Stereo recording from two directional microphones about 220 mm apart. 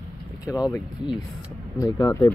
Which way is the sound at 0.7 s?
10° left (ahead or behind).